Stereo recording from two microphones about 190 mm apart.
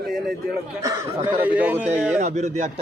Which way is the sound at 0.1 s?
Centre (ahead or behind).